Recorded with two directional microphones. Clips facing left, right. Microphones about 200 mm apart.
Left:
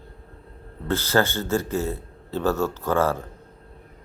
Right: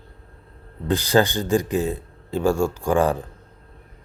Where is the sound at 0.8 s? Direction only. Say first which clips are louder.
Right 3 dB; 15° right (ahead or behind).